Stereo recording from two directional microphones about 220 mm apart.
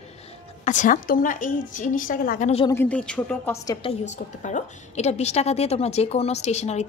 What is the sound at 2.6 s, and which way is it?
Speech, 10° left (ahead or behind).